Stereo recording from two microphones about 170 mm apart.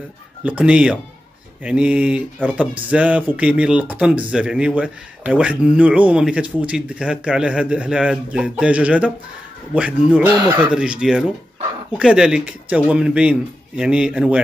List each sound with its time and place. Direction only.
0.4 s a man's voice: 5° right (ahead or behind)